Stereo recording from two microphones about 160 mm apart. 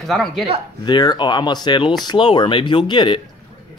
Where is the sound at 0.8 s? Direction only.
25° left (ahead or behind).